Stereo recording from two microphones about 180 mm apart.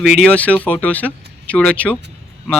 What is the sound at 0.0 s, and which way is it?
A man's voice, centre (ahead or behind).